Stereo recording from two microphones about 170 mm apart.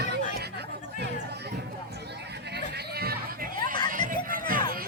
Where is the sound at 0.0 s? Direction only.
75° right (ahead or behind).